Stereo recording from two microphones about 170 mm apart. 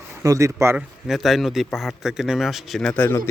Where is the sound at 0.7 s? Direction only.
Centre (ahead or behind).